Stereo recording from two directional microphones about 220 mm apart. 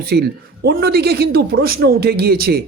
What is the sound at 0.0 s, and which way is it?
Speech, 45° right (ahead or behind).